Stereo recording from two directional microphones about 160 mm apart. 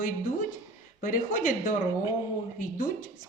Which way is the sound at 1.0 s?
55° left (ahead or behind).